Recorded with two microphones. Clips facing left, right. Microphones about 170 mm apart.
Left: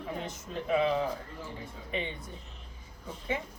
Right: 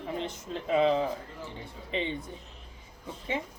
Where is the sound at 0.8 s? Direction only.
25° right (ahead or behind).